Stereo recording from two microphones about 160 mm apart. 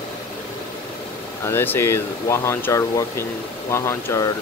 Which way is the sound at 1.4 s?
15° left (ahead or behind).